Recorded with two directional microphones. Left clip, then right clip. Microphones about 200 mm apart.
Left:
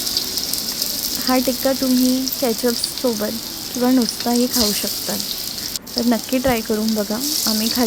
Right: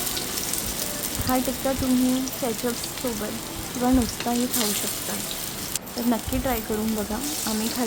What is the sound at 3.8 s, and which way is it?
Speech, 15° left (ahead or behind).